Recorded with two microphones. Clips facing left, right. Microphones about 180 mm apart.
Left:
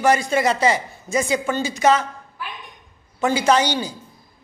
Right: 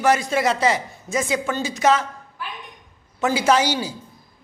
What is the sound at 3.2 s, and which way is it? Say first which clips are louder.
Speech: left 1 dB; 5° right (ahead or behind).